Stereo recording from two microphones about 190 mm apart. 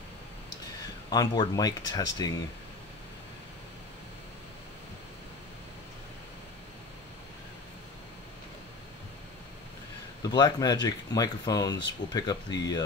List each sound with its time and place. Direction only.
1.1 s speech: 20° left (ahead or behind)
10.3 s speech: 20° left (ahead or behind)